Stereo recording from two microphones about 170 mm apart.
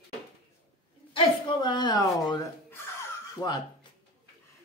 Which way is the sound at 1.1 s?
25° left (ahead or behind).